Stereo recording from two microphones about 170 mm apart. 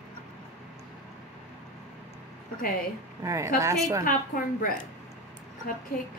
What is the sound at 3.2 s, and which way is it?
Speech, 20° right (ahead or behind).